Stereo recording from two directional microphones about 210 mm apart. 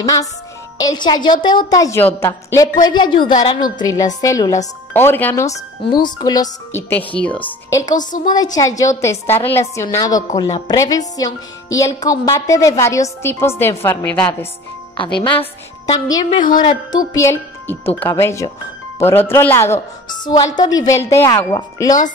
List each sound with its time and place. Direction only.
0.0 s a woman's voice: 15° left (ahead or behind)
6.7 s a woman's voice: 10° left (ahead or behind)
8.3 s a woman's voice: 20° left (ahead or behind)
15.9 s a woman's voice: 15° left (ahead or behind)